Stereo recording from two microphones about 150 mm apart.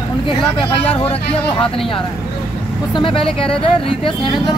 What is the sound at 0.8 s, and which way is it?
Speech, 40° left (ahead or behind).